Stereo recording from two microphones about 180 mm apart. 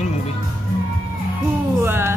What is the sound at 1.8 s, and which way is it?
Speech, 15° right (ahead or behind).